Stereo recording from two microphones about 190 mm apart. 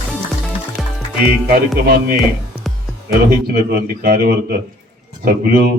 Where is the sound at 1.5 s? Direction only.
50° right (ahead or behind).